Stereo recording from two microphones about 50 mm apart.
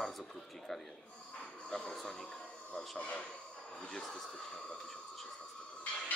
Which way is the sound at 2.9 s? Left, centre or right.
Left.